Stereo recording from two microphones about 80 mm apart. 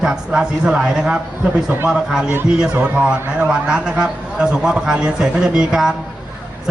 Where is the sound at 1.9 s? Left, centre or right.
Centre.